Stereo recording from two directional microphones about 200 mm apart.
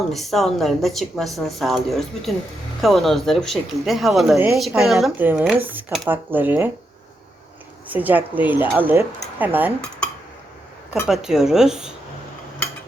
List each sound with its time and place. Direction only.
0.1 s speech: centre (ahead or behind)
7.9 s speech: 10° right (ahead or behind)
11.0 s speech: 5° right (ahead or behind)